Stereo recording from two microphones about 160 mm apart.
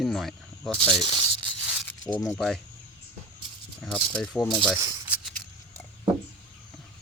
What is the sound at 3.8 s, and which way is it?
Speech, 5° left (ahead or behind).